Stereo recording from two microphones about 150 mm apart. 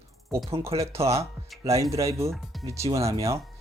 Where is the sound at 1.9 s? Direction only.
20° right (ahead or behind).